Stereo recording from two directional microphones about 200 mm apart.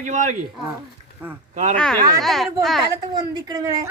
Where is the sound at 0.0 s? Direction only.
40° right (ahead or behind).